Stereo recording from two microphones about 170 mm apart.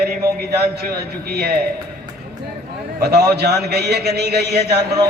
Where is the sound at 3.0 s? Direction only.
70° right (ahead or behind).